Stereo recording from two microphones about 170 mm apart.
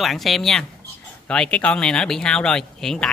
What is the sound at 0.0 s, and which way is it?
Speech, centre (ahead or behind).